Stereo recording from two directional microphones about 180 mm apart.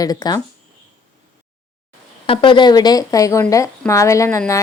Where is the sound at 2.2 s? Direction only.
30° left (ahead or behind).